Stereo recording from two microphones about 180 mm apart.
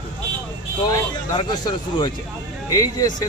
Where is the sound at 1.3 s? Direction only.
25° left (ahead or behind).